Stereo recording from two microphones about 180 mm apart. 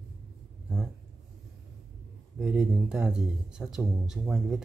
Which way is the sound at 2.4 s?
5° right (ahead or behind).